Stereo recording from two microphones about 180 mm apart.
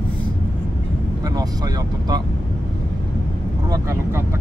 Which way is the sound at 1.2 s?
20° right (ahead or behind).